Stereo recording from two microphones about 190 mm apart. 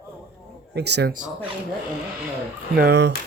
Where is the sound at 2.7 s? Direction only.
60° right (ahead or behind).